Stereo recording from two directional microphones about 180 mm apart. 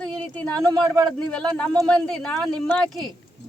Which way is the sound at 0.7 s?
20° right (ahead or behind).